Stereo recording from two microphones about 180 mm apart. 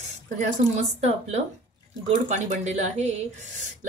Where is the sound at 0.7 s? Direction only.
35° right (ahead or behind).